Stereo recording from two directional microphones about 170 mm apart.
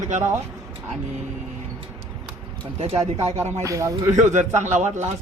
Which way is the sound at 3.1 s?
35° right (ahead or behind).